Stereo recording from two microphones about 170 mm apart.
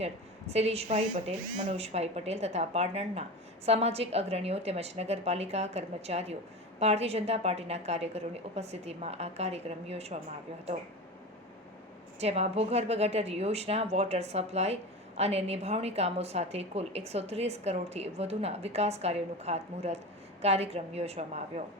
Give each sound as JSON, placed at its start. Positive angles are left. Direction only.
{"t": 0.0, "sound": "a woman's voice", "side_deg": -40}
{"t": 12.2, "sound": "speech", "side_deg": -40}